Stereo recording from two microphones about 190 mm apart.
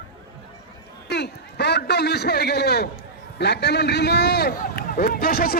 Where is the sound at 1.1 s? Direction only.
60° left (ahead or behind).